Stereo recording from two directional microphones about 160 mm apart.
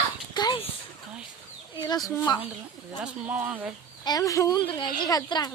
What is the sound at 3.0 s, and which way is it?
Speech, 10° right (ahead or behind).